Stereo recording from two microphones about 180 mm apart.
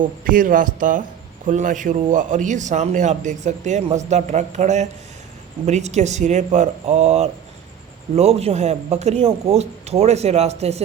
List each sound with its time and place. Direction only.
0.0 s a man's voice: 50° right (ahead or behind)